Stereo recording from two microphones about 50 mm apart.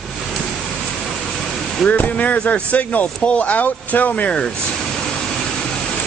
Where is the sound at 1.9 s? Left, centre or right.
Left.